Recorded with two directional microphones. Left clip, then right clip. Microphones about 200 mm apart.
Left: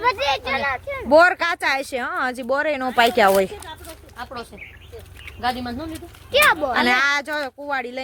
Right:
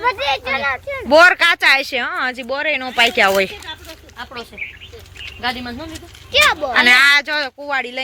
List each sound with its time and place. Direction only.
0.0 s a sound: 40° right (ahead or behind)
1.1 s speech: centre (ahead or behind); by 3.2 s 25° left (ahead or behind)
3.2 s speech: 10° left (ahead or behind)
4.6 s bird: 30° left (ahead or behind)
5.4 s speech: 65° left (ahead or behind)
5.9 s speech: 40° left (ahead or behind)
6.8 s speech: 10° left (ahead or behind)